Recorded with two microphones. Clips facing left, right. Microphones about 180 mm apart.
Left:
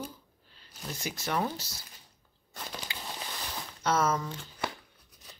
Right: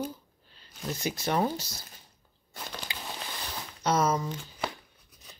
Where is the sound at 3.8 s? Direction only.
15° right (ahead or behind).